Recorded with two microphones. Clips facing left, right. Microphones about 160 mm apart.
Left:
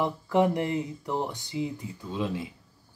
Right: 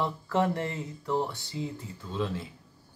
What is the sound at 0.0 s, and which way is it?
Speech, 15° left (ahead or behind).